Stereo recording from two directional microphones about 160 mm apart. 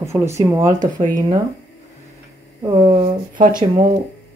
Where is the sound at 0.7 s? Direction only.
50° right (ahead or behind).